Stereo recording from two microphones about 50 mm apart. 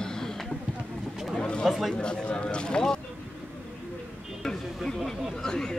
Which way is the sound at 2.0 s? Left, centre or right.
Centre.